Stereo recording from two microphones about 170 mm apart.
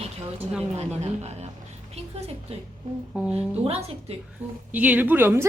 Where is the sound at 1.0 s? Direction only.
40° right (ahead or behind).